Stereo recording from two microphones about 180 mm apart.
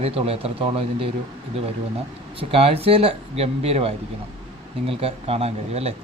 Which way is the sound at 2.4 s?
30° right (ahead or behind).